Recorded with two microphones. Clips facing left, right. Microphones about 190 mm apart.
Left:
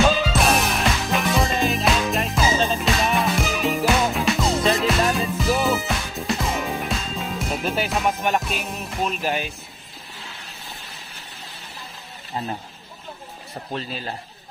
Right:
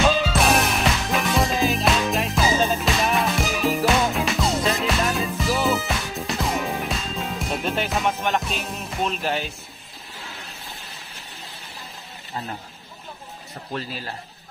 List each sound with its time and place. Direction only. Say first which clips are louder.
0.0 s music: left 1 dB; centre (ahead or behind)
8.2 s music: left 1 dB; 15° left (ahead or behind)
13.7 s a man's voice: left 1 dB; 25° left (ahead or behind)